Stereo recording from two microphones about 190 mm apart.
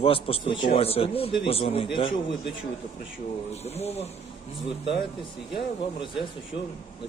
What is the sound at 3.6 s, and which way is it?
Speech, 35° left (ahead or behind).